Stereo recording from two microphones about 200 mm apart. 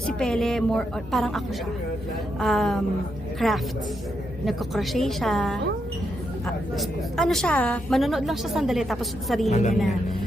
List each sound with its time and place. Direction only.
0.2 s a woman's voice: centre (ahead or behind)
2.4 s a woman's voice: centre (ahead or behind)
6.7 s a woman's voice: centre (ahead or behind)
9.5 s a woman's voice: 35° left (ahead or behind)